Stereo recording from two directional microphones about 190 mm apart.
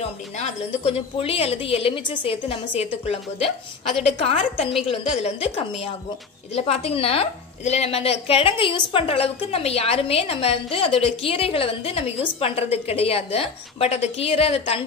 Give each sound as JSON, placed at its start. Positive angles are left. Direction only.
{"t": 0.4, "sound": "a woman's voice", "side_deg": 30}